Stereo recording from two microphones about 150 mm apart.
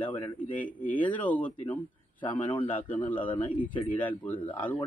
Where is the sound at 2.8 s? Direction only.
10° left (ahead or behind).